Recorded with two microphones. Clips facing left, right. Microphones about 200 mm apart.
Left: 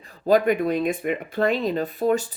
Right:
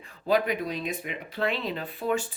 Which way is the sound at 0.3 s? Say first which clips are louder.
Left 7 dB; 50° left (ahead or behind).